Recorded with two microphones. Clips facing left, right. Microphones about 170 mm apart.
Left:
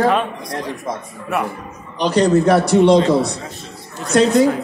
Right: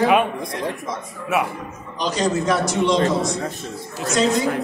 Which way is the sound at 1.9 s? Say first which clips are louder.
Left 7 dB; 60° left (ahead or behind).